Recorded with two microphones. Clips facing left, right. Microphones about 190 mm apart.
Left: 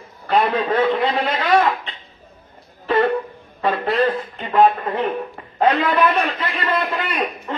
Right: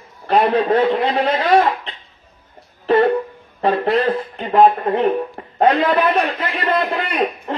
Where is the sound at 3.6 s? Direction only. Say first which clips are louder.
Right 2 dB; 35° right (ahead or behind).